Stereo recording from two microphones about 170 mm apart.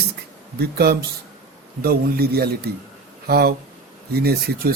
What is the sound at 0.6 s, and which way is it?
A man's voice, 65° right (ahead or behind).